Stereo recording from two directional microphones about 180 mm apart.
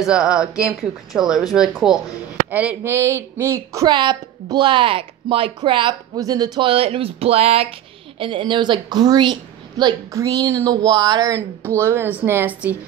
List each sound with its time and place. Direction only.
0.0 s a woman's voice: 5° right (ahead or behind)